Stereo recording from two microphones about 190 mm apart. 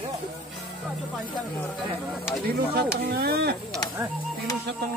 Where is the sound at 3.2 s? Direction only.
55° right (ahead or behind).